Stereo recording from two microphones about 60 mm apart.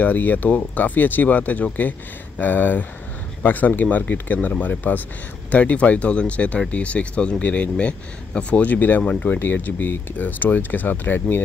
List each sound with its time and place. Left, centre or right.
0.0 s speech: left
9.0 s speech: left
9.4 s speech: left